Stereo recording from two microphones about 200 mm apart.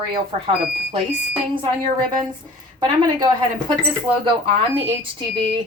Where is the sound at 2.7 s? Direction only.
20° right (ahead or behind).